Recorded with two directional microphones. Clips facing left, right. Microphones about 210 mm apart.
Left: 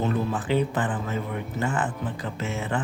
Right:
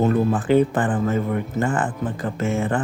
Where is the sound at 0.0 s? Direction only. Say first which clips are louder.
Right 7 dB; 50° right (ahead or behind).